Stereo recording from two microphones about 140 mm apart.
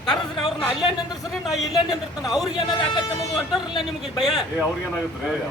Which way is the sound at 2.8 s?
35° left (ahead or behind).